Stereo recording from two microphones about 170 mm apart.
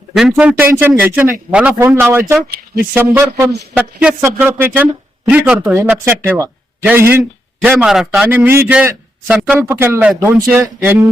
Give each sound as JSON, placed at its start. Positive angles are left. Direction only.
{"t": 0.2, "sound": "speech", "side_deg": -5}